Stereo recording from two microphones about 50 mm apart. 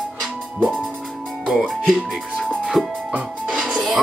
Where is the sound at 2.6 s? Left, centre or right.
Centre.